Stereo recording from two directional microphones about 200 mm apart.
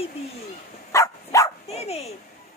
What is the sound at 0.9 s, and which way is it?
Dog, 15° left (ahead or behind).